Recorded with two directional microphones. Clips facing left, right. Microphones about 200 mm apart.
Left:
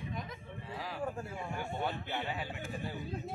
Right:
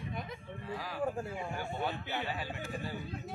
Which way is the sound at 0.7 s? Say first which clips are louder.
Right 3 dB; 25° left (ahead or behind).